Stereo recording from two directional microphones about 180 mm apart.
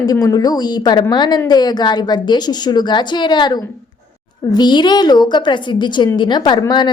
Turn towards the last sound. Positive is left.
turn(degrees=25)  # may be behind; listen again after turning